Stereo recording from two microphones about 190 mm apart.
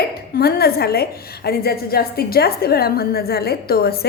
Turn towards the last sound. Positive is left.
turn(degrees=55)  # may be behind; listen again after turning